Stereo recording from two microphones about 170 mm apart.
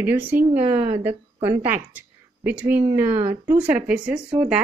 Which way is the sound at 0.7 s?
10° right (ahead or behind).